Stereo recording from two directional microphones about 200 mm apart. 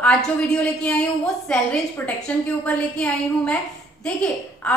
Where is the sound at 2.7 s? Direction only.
5° left (ahead or behind).